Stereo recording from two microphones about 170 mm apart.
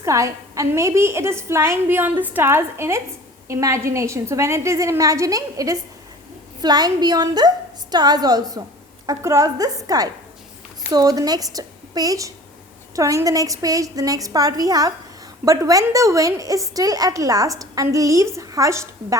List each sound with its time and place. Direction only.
0.0 s a woman's voice: 15° right (ahead or behind)